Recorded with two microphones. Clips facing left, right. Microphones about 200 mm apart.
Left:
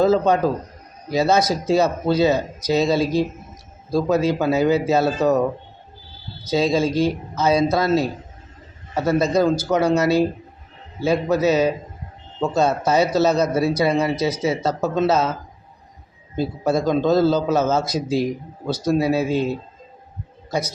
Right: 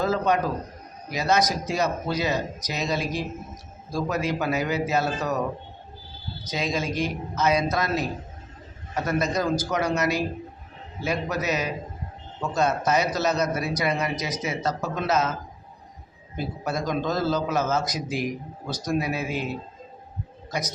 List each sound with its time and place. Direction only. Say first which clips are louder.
0.0 s speech: left 7 dB; 30° left (ahead or behind)
6.5 s speech: left 9 dB; 30° left (ahead or behind)
9.0 s speech: left 7 dB; 30° left (ahead or behind)
16.4 s speech: left 8 dB; 25° left (ahead or behind)